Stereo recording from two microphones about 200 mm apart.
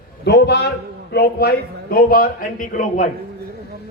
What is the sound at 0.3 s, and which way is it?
A man's voice, 55° left (ahead or behind).